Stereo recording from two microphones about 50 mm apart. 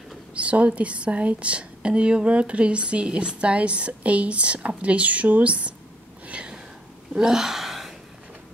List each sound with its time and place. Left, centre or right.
0.3 s a woman's voice: right
6.2 s a sound: right
7.2 s gasp: centre